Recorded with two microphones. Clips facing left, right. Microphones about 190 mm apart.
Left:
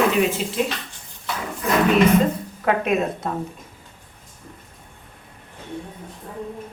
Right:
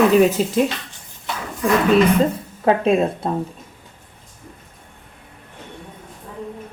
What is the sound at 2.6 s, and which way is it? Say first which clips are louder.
Speech: right 4 dB; 30° right (ahead or behind).